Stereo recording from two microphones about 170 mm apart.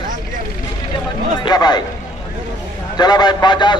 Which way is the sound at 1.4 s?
25° left (ahead or behind).